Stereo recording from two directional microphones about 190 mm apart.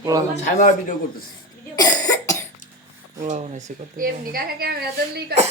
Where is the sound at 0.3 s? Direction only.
40° left (ahead or behind).